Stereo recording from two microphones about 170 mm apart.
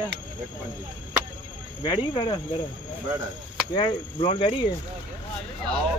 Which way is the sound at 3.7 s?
30° left (ahead or behind).